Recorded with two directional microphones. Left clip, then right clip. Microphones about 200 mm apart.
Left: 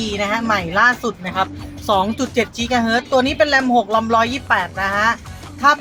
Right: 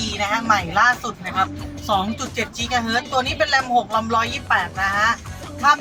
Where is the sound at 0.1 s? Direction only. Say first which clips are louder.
Even; 50° left (ahead or behind).